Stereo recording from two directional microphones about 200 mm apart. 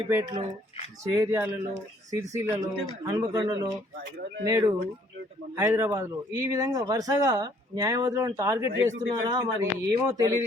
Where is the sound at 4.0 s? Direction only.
50° right (ahead or behind).